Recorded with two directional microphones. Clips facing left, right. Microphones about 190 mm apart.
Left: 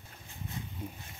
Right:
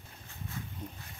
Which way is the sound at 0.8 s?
10° left (ahead or behind).